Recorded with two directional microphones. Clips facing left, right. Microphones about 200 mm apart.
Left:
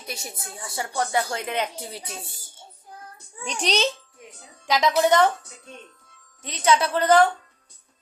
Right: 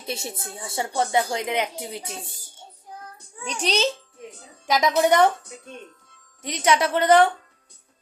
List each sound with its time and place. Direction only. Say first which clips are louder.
0.0 s speech: right 5 dB; 25° right (ahead or behind)
3.4 s a child's voice: even; 5° right (ahead or behind)
4.7 s speech: even; 20° right (ahead or behind)
6.6 s speech: even; 20° right (ahead or behind)